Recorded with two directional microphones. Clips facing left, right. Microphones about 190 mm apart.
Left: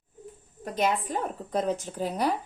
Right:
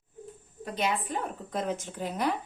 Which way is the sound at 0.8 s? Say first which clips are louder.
Left 3 dB; 45° left (ahead or behind).